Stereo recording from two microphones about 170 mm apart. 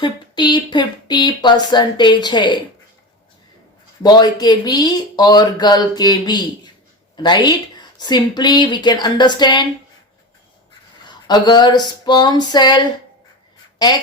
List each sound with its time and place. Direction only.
0.0 s speech: 25° left (ahead or behind)
4.0 s speech: 25° left (ahead or behind)
11.0 s a sound: 25° left (ahead or behind)
13.8 s speech: 25° left (ahead or behind)